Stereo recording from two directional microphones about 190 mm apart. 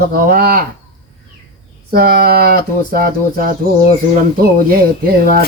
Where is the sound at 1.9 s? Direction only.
50° right (ahead or behind).